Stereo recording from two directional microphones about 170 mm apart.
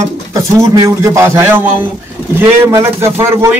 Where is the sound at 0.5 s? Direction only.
20° right (ahead or behind).